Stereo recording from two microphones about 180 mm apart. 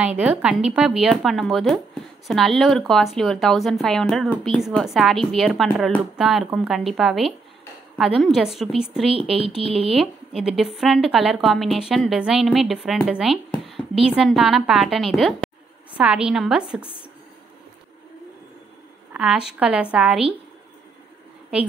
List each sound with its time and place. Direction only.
0.0 s a woman's voice: 10° right (ahead or behind)
9.1 s speech: 30° right (ahead or behind)
9.9 s speech: centre (ahead or behind)
19.1 s speech: 5° right (ahead or behind)